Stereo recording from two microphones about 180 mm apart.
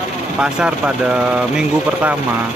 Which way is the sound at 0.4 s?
5° right (ahead or behind).